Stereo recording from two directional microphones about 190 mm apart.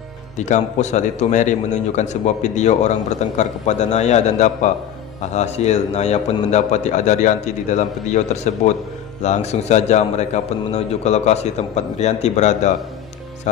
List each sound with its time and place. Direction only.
0.4 s a man's voice: 40° left (ahead or behind)